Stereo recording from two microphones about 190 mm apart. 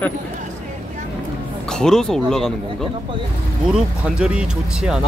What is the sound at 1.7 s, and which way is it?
Speech, 5° left (ahead or behind).